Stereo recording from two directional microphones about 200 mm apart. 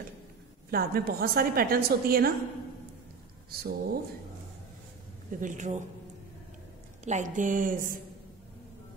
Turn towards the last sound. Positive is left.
turn(degrees=-45)  # may be behind; listen again after turning